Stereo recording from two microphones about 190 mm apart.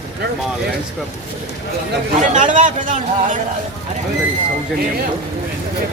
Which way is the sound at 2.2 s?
45° right (ahead or behind).